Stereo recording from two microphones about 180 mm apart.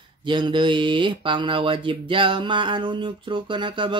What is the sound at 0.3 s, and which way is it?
Speech, 25° right (ahead or behind).